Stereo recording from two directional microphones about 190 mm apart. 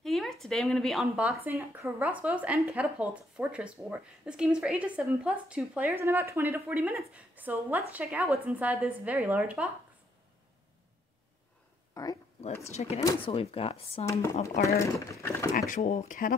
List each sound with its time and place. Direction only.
0.0 s speech: centre (ahead or behind)
11.9 s speech: 20° left (ahead or behind)
12.7 s speech: 35° left (ahead or behind)
14.6 s speech: 15° left (ahead or behind)
15.5 s speech: 45° left (ahead or behind)